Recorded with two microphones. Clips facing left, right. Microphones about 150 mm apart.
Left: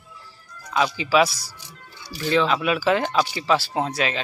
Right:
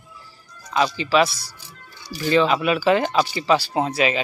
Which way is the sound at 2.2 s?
Centre (ahead or behind).